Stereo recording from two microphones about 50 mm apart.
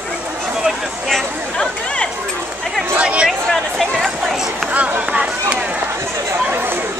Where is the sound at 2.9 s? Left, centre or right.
Right.